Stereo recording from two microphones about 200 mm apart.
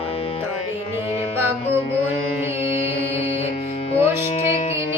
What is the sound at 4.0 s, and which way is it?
Music, 30° left (ahead or behind).